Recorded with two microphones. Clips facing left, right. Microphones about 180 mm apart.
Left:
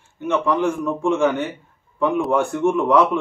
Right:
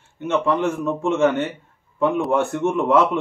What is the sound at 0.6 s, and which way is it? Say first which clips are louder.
Speech: left 1 dB; 20° right (ahead or behind).